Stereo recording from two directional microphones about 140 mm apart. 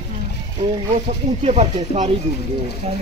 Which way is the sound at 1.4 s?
50° right (ahead or behind).